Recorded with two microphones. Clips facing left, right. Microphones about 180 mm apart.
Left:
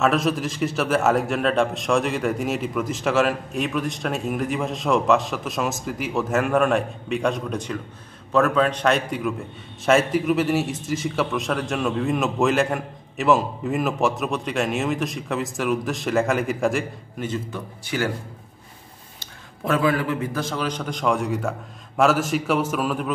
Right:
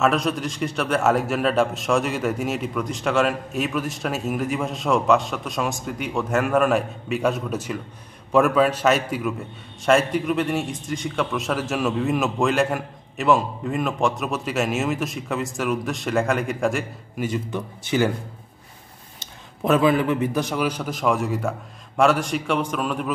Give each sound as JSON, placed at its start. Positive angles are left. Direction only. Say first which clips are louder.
{"t": 0.0, "sound": "a man's voice", "louder": "even", "side_deg": 0}
{"t": 17.3, "sound": "speech", "louder": "right 2 dB", "side_deg": -20}
{"t": 19.1, "sound": "a man's voice", "louder": "right 1 dB", "side_deg": -20}